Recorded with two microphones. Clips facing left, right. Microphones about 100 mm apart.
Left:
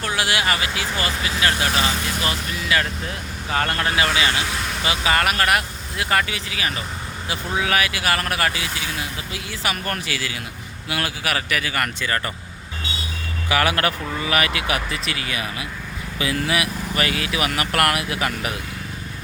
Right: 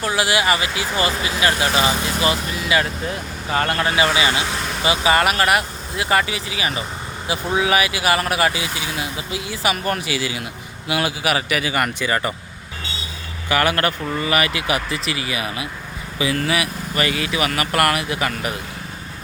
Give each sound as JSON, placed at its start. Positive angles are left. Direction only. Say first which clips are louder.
{"t": 0.0, "sound": "speech", "louder": "right 3 dB", "side_deg": -5}
{"t": 13.5, "sound": "speech", "louder": "right 2 dB", "side_deg": 0}
{"t": 16.1, "sound": "speech", "louder": "right 2 dB", "side_deg": 0}